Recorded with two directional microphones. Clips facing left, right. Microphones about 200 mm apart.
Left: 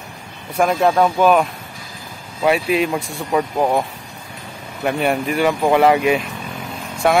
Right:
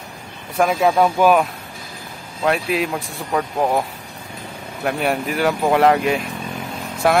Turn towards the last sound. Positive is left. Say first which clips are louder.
# left 1 dB
turn(degrees=0)  # may be behind; listen again after turning